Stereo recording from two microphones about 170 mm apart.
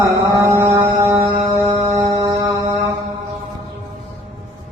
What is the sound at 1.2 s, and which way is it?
Mantra, 25° right (ahead or behind).